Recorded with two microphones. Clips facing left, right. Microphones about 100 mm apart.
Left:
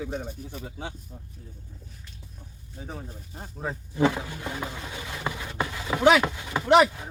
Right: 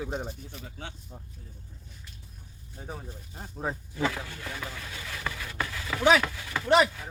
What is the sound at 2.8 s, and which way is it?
Speech, centre (ahead or behind).